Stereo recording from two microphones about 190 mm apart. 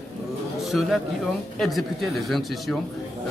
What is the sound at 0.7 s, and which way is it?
Speech, centre (ahead or behind).